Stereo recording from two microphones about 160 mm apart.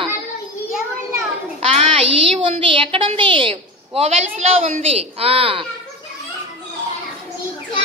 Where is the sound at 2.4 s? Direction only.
35° right (ahead or behind).